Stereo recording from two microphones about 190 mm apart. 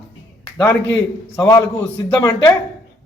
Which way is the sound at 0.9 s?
10° left (ahead or behind).